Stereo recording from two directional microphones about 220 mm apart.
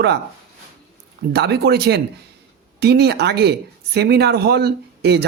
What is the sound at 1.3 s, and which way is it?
Speech, 50° right (ahead or behind).